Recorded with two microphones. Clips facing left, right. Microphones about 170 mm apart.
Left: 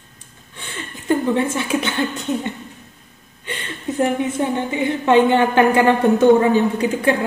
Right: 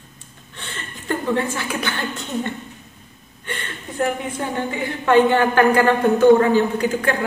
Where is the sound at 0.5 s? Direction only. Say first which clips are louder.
Left 2 dB; 10° left (ahead or behind).